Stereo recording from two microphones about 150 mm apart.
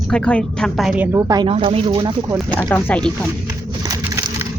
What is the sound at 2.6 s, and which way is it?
Speech, 10° left (ahead or behind).